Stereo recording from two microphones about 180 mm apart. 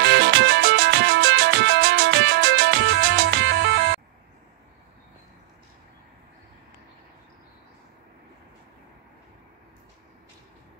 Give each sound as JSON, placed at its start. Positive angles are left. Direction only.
{"t": 0.0, "sound": "music", "side_deg": -70}